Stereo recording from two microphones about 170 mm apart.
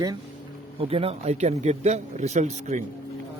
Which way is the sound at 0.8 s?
35° right (ahead or behind).